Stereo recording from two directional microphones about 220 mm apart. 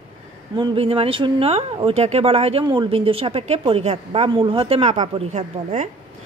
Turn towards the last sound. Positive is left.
turn(degrees=-30)  # may be behind; listen again after turning